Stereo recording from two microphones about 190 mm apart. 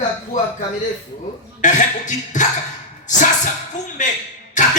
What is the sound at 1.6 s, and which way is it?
Speech, 40° left (ahead or behind).